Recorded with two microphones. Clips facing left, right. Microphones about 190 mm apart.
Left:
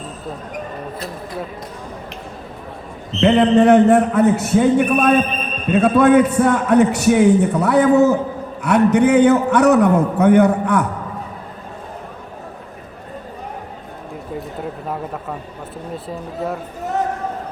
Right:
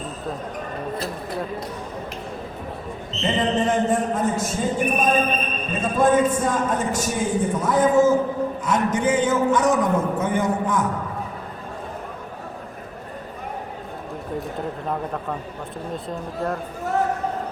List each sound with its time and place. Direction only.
3.1 s a man's voice: 65° left (ahead or behind)
14.8 s a man's voice: 5° left (ahead or behind)